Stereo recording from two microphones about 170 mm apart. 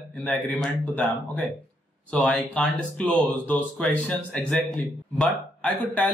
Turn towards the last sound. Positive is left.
turn(degrees=10)  # may be behind; listen again after turning